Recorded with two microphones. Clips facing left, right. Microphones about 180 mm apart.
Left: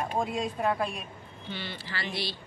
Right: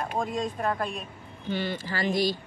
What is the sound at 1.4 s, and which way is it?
Speech, 45° right (ahead or behind).